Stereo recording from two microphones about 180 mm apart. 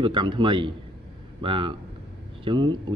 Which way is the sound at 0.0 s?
25° right (ahead or behind).